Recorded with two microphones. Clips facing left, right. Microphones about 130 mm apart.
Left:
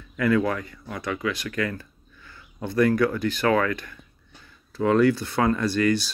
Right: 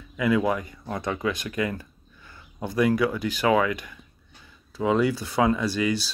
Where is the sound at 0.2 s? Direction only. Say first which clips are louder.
Left 1 dB; 15° right (ahead or behind).